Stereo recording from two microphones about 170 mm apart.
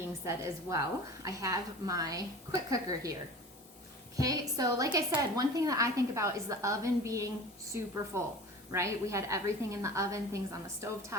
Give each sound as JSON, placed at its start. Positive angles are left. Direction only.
{"t": 0.3, "sound": "a woman's voice", "side_deg": -20}
{"t": 4.2, "sound": "a woman's voice", "side_deg": -20}